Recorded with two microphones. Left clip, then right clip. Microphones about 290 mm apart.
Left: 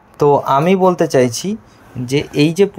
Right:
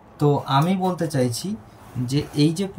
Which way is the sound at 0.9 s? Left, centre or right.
Centre.